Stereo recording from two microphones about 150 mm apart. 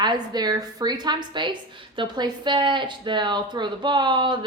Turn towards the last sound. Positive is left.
turn(degrees=-30)  # may be behind; listen again after turning